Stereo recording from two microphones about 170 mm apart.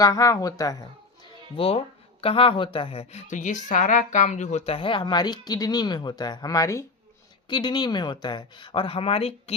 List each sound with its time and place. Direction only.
0.0 s a child's voice: 20° left (ahead or behind); by 9.6 s 35° left (ahead or behind)